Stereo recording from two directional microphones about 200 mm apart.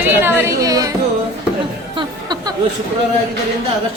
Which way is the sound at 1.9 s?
20° right (ahead or behind).